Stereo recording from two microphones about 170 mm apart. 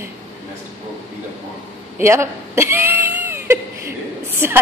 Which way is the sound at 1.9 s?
15° right (ahead or behind).